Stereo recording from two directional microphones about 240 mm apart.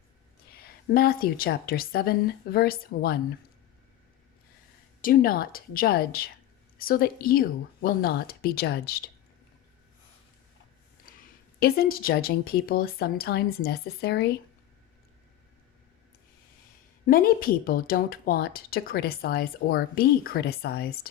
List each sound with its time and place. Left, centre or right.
0.5 s a woman's voice: left
5.0 s a woman's voice: left
11.6 s a woman's voice: left
17.1 s a woman's voice: left